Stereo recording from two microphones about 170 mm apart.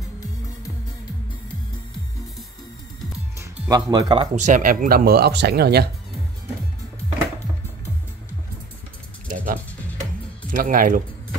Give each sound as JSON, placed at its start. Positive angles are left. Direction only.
{"t": 3.3, "sound": "music", "side_deg": -20}
{"t": 4.5, "sound": "speech", "side_deg": -50}
{"t": 9.3, "sound": "music", "side_deg": -55}
{"t": 10.5, "sound": "speech", "side_deg": -55}